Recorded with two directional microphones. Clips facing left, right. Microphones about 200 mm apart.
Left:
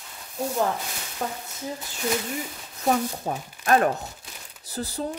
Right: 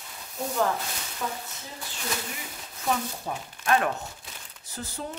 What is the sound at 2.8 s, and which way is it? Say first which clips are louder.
A woman's voice: left 5 dB; 40° left (ahead or behind).